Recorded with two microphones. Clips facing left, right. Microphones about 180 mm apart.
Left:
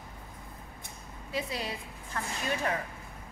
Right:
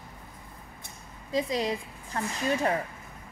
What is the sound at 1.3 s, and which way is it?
A woman's voice, 35° right (ahead or behind).